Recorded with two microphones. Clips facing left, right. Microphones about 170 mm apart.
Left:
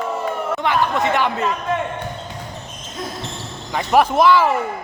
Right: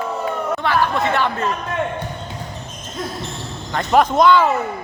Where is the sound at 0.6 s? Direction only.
20° left (ahead or behind).